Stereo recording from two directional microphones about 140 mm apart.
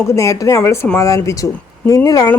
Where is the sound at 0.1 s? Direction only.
20° left (ahead or behind).